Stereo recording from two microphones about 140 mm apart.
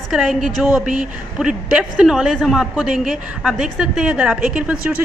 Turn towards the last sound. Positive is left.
turn(degrees=-10)  # may be behind; listen again after turning